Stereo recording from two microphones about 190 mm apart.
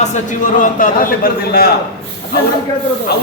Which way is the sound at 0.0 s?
45° left (ahead or behind).